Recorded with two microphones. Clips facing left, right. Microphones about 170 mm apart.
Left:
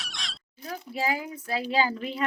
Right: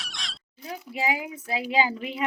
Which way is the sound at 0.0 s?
Centre (ahead or behind).